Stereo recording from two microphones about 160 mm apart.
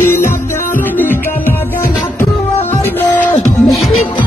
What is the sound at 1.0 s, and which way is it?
Music, 10° left (ahead or behind).